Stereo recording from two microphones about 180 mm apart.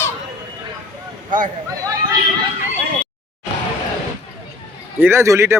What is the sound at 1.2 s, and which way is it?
Speech, 50° right (ahead or behind).